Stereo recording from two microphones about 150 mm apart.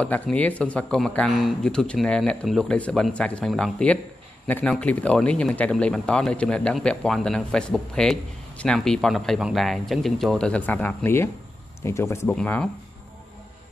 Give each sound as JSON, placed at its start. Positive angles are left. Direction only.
{"t": 0.0, "sound": "speech", "side_deg": 10}